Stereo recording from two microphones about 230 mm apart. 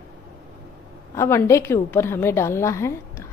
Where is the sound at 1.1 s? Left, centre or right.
Centre.